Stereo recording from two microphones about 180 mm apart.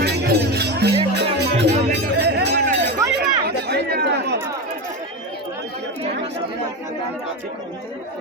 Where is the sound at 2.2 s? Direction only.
70° right (ahead or behind).